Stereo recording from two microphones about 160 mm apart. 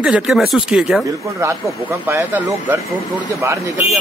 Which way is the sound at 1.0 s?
20° right (ahead or behind).